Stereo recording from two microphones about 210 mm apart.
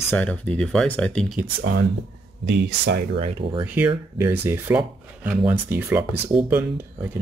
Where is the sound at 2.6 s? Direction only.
50° right (ahead or behind).